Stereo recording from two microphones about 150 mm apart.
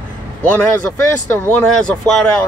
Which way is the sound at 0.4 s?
10° left (ahead or behind).